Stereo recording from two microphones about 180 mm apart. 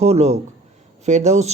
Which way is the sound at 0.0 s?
35° right (ahead or behind).